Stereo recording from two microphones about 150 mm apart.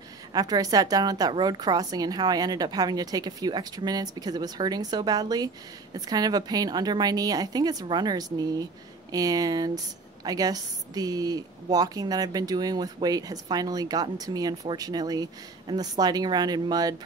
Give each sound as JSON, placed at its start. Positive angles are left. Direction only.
{"t": 0.3, "sound": "a woman's voice", "side_deg": -25}